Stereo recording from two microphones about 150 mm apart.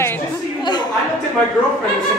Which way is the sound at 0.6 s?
30° left (ahead or behind).